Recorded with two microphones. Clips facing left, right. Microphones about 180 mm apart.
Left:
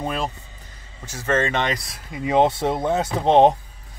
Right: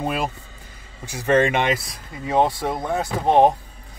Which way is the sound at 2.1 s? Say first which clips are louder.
Left 2 dB; 15° left (ahead or behind).